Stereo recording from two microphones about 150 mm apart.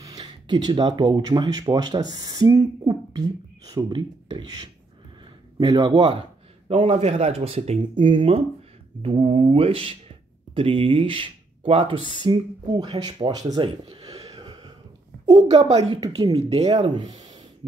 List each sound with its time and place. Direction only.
0.0 s speech: 25° right (ahead or behind); by 7.8 s 45° right (ahead or behind)
7.9 s speech: 30° right (ahead or behind)
13.8 s a sound: 35° right (ahead or behind)
14.2 s a sound: 25° right (ahead or behind)
15.4 s speech: 45° right (ahead or behind)
15.9 s speech: 25° right (ahead or behind)
16.3 s speech: 45° right (ahead or behind)
16.6 s speech: 30° right (ahead or behind)